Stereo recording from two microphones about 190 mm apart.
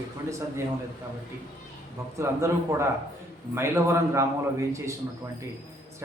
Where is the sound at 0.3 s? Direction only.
15° right (ahead or behind).